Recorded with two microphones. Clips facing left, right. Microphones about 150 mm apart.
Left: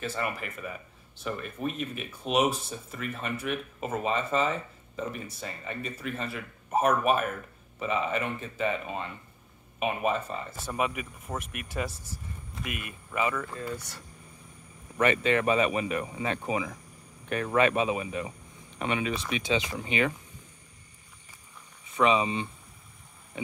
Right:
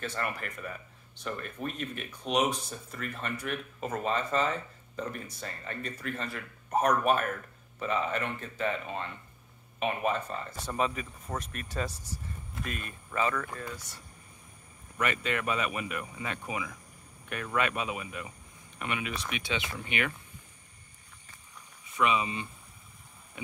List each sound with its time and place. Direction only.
0.0 s speech: 5° left (ahead or behind)
13.7 s speech: 75° left (ahead or behind)
15.0 s speech: 30° left (ahead or behind)
21.9 s speech: 30° left (ahead or behind)